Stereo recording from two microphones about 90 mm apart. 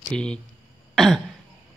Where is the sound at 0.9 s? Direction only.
Centre (ahead or behind).